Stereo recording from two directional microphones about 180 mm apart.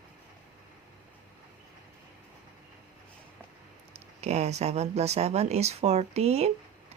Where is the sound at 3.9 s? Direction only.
35° right (ahead or behind).